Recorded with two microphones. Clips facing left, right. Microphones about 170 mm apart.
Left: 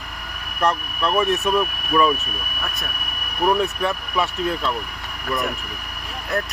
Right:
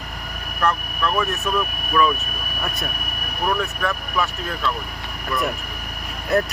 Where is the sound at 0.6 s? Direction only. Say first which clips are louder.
Left 1 dB; 30° left (ahead or behind).